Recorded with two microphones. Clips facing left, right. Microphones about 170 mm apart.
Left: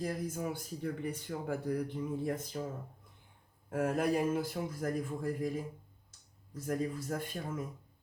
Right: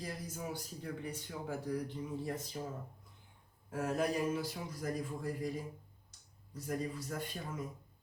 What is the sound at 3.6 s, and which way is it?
Speech, 55° left (ahead or behind).